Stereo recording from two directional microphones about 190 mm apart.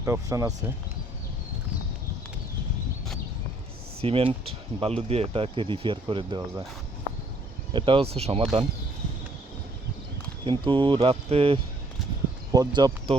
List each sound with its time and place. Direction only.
0.0 s speech: 15° right (ahead or behind)
4.0 s speech: 30° right (ahead or behind)
7.7 s speech: 25° right (ahead or behind)
10.4 s speech: 25° right (ahead or behind)